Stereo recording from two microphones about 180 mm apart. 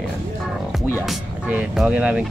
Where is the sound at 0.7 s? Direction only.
Centre (ahead or behind).